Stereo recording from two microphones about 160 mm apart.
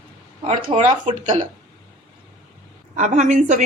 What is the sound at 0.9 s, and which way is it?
Speech, 50° right (ahead or behind).